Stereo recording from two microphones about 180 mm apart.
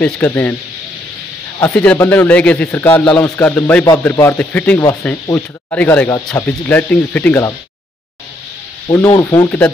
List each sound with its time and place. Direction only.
0.0 s speech: 10° left (ahead or behind)
1.6 s speech: 10° left (ahead or behind)
8.9 s speech: 15° left (ahead or behind)